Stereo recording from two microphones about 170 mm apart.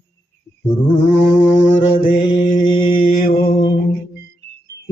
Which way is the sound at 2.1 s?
30° left (ahead or behind).